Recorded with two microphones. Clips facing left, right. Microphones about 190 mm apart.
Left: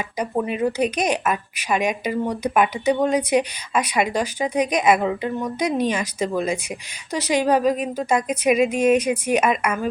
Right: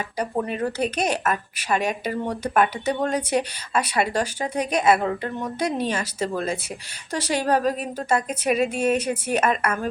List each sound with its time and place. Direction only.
0.3 s a woman's voice: 10° left (ahead or behind)